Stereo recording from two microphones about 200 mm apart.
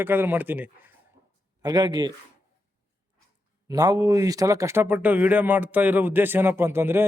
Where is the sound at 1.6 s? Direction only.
20° right (ahead or behind).